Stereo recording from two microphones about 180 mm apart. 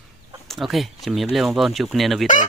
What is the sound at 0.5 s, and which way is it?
Speech, centre (ahead or behind).